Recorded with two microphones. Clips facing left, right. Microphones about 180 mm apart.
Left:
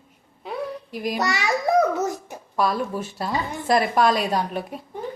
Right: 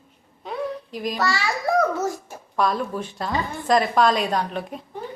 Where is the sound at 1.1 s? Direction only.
20° left (ahead or behind).